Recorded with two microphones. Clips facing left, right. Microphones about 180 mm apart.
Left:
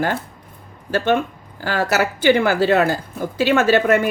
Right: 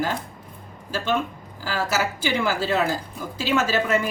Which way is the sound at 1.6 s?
65° left (ahead or behind).